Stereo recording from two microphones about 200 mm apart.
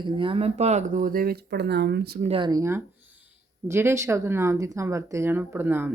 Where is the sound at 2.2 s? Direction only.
25° right (ahead or behind).